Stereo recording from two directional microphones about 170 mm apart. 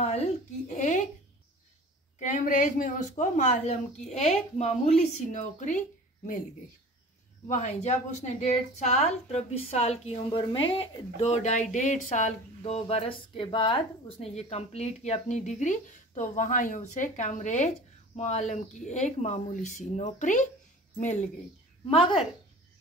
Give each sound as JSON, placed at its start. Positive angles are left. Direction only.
{"t": 0.7, "sound": "a sound", "side_deg": 45}
{"t": 2.1, "sound": "speech", "side_deg": 50}
{"t": 7.4, "sound": "a woman's voice", "side_deg": 45}
{"t": 21.9, "sound": "a woman's voice", "side_deg": 30}